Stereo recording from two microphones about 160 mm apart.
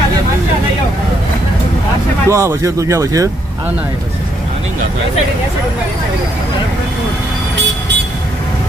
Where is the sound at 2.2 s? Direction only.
20° right (ahead or behind).